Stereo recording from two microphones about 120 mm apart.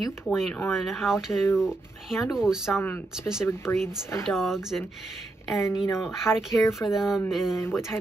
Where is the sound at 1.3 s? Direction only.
25° left (ahead or behind).